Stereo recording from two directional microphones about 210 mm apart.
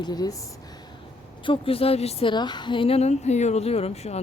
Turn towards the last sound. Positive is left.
turn(degrees=30)  # may be behind; listen again after turning